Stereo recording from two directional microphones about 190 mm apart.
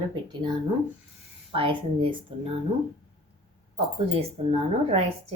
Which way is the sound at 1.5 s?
30° right (ahead or behind).